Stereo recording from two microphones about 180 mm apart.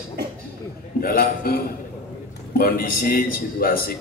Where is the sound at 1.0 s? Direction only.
55° left (ahead or behind).